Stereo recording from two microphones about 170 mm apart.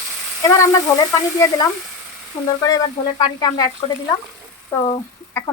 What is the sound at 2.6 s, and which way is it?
Speech, 25° left (ahead or behind).